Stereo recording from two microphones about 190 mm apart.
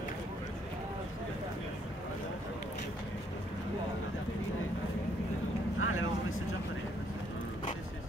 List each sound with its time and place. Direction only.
5.8 s vehicle: 90° left